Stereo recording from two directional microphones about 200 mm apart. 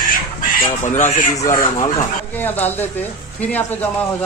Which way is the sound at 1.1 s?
35° left (ahead or behind).